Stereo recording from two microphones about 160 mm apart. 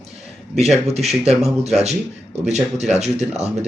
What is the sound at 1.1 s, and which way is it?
Speech, 40° right (ahead or behind).